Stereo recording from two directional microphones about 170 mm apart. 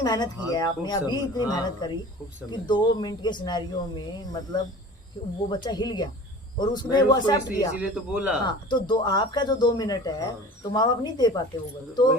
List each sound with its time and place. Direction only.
0.0 s speech: 25° left (ahead or behind)
7.8 s a man's voice: 5° right (ahead or behind)
8.4 s speech: 25° left (ahead or behind)